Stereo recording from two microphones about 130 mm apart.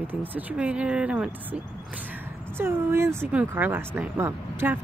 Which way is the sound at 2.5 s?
20° right (ahead or behind).